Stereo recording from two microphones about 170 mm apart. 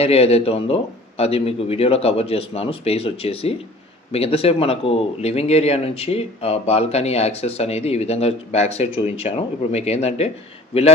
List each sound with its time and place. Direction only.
0.0 s speech: 35° left (ahead or behind)